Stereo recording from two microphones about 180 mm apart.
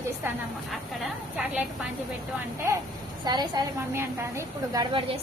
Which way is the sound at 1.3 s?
5° right (ahead or behind).